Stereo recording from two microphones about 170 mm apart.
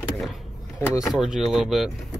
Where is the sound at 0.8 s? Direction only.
15° left (ahead or behind).